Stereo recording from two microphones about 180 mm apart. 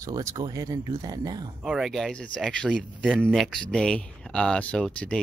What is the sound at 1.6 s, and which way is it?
Speech, 5° right (ahead or behind).